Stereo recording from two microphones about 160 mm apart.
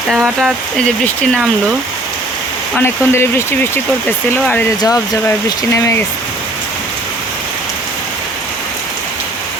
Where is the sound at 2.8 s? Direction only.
15° left (ahead or behind).